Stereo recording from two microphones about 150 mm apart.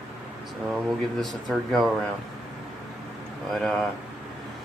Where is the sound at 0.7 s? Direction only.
Centre (ahead or behind).